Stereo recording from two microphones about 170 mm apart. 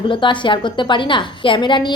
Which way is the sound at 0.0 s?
30° left (ahead or behind).